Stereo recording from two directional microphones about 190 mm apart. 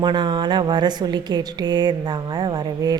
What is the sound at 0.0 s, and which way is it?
A woman's voice, 25° right (ahead or behind).